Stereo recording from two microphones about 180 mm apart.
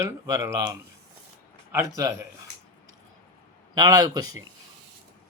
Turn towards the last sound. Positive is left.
turn(degrees=-20)  # may be behind; listen again after turning